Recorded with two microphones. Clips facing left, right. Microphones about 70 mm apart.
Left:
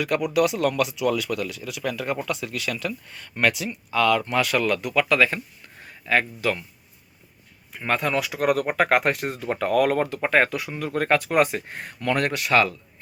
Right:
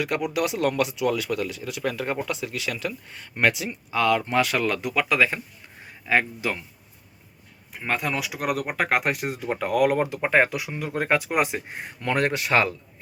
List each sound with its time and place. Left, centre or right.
0.0 s speech: right
7.7 s speech: centre; by 12.7 s right